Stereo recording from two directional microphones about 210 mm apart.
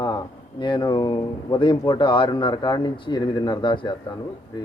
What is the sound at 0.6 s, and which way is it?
Speech, 20° left (ahead or behind).